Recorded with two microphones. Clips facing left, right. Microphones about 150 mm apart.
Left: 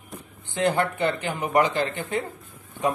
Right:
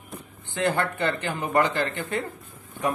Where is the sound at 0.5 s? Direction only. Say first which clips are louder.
Left 2 dB; 15° left (ahead or behind).